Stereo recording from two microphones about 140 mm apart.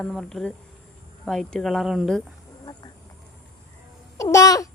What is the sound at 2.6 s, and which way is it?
Duck, 30° left (ahead or behind).